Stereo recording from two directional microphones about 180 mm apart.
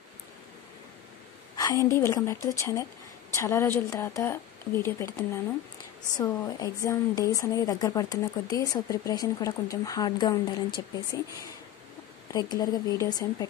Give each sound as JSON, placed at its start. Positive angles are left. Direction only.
{"t": 1.6, "sound": "a woman's voice", "side_deg": 20}
{"t": 12.3, "sound": "a woman's voice", "side_deg": 20}